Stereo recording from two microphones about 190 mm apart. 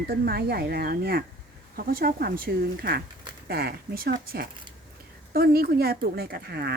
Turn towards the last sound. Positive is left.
turn(degrees=-55)  # may be behind; listen again after turning